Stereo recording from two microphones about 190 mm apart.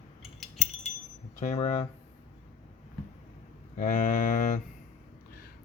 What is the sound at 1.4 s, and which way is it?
Speech, 35° left (ahead or behind).